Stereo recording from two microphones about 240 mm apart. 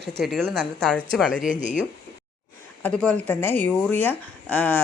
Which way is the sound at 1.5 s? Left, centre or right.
Left.